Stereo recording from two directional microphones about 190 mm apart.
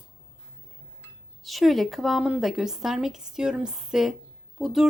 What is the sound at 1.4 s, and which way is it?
A woman's voice, centre (ahead or behind).